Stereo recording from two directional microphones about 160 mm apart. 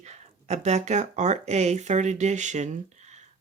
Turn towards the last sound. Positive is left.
turn(degrees=-45)  # may be behind; listen again after turning